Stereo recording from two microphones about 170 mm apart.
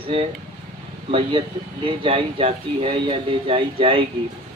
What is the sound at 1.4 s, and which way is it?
Speech, 30° right (ahead or behind).